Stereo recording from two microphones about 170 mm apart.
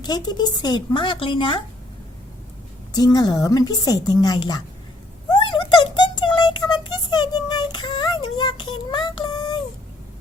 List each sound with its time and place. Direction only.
0.0 s a woman's voice: 25° left (ahead or behind)
2.9 s a woman's voice: 25° left (ahead or behind)
5.3 s a sound: 25° left (ahead or behind)